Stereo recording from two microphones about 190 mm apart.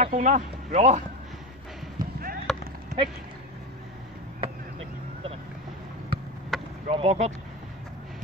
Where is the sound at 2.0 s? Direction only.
50° right (ahead or behind).